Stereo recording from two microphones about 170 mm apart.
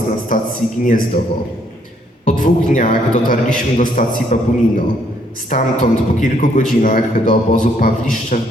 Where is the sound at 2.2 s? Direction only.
50° left (ahead or behind).